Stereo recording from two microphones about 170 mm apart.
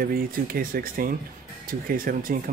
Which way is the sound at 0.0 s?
60° right (ahead or behind).